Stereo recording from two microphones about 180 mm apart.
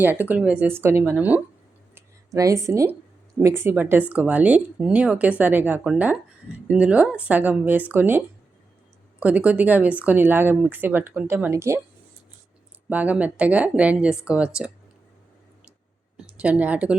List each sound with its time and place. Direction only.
0.0 s speech: 10° right (ahead or behind)
2.0 s a sound: 15° right (ahead or behind)
3.4 s speech: 15° right (ahead or behind)
9.2 s speech: 10° right (ahead or behind)
12.9 s speech: 10° right (ahead or behind)
16.1 s speech: 5° right (ahead or behind)